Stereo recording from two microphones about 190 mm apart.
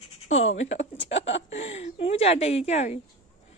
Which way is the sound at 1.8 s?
30° left (ahead or behind).